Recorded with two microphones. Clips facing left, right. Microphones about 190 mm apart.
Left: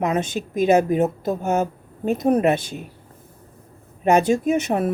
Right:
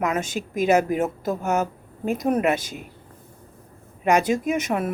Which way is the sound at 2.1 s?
35° left (ahead or behind).